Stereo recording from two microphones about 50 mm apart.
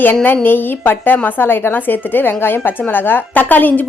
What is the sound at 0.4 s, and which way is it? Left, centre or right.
A woman's voice, left.